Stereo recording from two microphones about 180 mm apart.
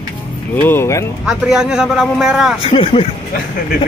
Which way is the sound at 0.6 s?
15° left (ahead or behind).